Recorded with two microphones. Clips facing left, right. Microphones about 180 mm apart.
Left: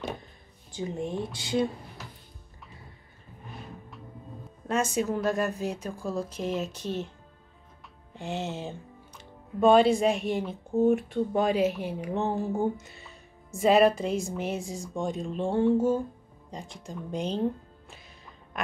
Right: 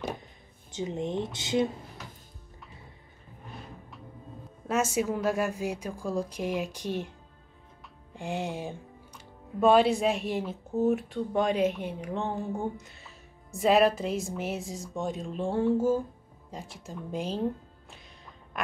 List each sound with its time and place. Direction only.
0.7 s speech: 20° right (ahead or behind)
4.6 s a woman's voice: 10° right (ahead or behind)
8.1 s speech: 10° right (ahead or behind)